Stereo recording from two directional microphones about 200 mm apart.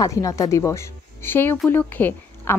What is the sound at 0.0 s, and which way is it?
Speech, 15° left (ahead or behind).